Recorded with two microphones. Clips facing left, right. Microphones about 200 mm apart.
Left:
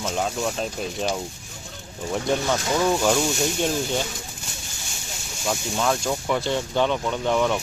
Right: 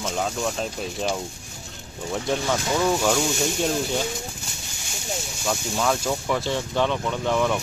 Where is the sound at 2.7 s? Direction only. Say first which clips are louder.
Left 1 dB; centre (ahead or behind).